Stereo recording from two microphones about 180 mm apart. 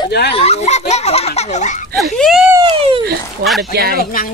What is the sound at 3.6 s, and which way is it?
Speech, 60° right (ahead or behind).